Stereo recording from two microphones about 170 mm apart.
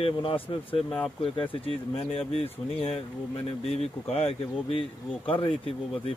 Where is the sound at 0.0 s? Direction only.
30° left (ahead or behind).